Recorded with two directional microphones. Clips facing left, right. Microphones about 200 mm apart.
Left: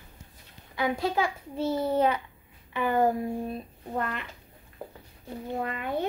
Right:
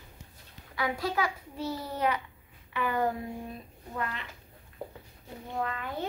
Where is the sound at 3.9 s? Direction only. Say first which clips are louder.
Left 4 dB; 50° left (ahead or behind).